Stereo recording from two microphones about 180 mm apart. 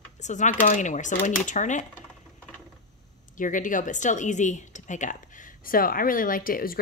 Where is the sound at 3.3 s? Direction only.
45° left (ahead or behind).